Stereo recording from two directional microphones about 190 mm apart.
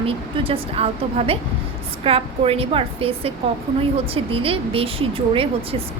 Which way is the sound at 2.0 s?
30° right (ahead or behind).